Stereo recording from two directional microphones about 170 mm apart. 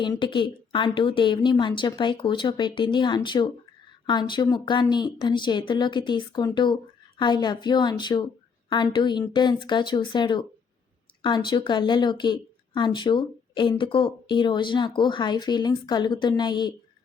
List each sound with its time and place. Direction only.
0.0 s a woman's voice: 30° left (ahead or behind)